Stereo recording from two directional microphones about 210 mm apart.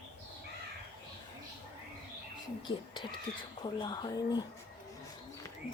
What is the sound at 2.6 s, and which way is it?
Speech, 20° left (ahead or behind).